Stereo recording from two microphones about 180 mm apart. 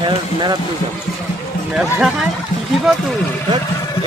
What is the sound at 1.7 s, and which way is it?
Speech, 5° right (ahead or behind).